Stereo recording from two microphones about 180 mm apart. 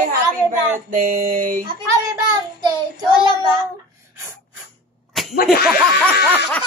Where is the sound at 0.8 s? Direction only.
50° right (ahead or behind).